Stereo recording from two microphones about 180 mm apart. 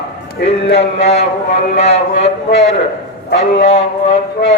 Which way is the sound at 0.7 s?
35° left (ahead or behind).